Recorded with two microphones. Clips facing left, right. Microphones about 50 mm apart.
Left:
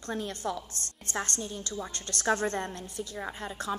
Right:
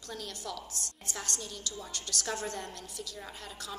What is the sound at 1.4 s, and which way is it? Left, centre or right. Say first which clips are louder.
A woman's voice: left 5 dB; left.